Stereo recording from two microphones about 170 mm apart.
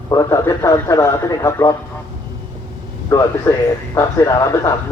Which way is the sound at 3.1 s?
20° left (ahead or behind).